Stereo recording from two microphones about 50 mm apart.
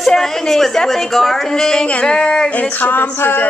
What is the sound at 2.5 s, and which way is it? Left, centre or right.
Music, left.